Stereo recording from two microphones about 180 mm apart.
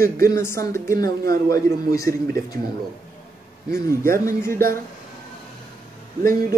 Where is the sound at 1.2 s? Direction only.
55° right (ahead or behind).